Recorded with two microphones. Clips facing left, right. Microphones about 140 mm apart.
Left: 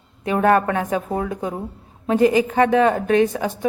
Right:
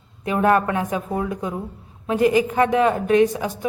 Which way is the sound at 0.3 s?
35° left (ahead or behind).